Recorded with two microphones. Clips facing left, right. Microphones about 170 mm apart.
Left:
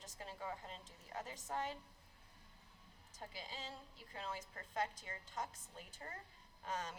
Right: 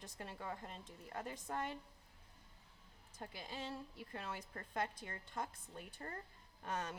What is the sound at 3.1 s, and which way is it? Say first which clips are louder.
A woman's voice: right 3 dB; 55° right (ahead or behind).